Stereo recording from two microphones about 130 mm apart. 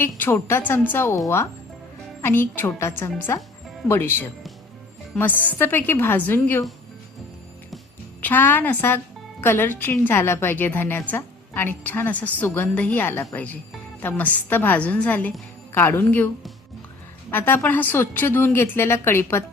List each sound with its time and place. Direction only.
0.0 s a woman's voice: 15° left (ahead or behind)
2.2 s a woman's voice: 15° left (ahead or behind)
8.2 s a woman's voice: 15° left (ahead or behind)
17.3 s a woman's voice: 15° left (ahead or behind)